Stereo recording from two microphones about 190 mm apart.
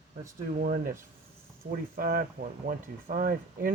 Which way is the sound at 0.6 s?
45° right (ahead or behind).